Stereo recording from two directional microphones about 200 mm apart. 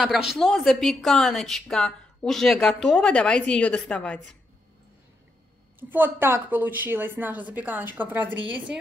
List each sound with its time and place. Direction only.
0.0 s speech: centre (ahead or behind)
5.8 s a woman's voice: 10° right (ahead or behind)